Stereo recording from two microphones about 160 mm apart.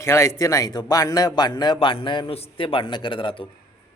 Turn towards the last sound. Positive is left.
turn(degrees=30)  # may be behind; listen again after turning